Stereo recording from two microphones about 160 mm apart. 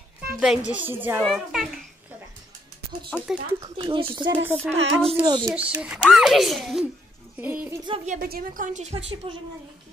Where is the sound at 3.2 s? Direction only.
5° right (ahead or behind).